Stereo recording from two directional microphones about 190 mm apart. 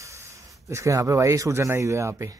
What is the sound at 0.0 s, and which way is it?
Speech, 15° right (ahead or behind).